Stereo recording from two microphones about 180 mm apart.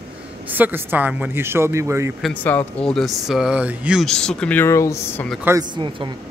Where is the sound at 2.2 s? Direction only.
10° left (ahead or behind).